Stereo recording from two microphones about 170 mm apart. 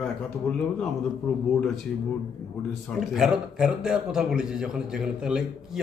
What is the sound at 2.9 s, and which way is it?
A man's voice, 5° right (ahead or behind).